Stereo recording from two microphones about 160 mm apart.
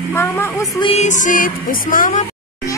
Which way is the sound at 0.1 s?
15° left (ahead or behind).